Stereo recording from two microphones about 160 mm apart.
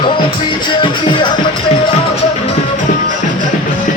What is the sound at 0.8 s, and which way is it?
Music, 30° left (ahead or behind).